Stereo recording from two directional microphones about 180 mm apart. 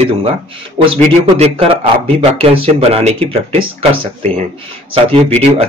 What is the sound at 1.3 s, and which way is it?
Speech, 35° right (ahead or behind).